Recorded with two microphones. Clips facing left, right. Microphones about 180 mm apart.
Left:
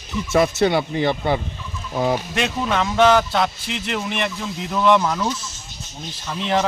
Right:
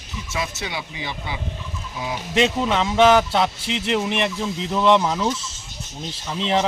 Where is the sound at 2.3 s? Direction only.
20° right (ahead or behind).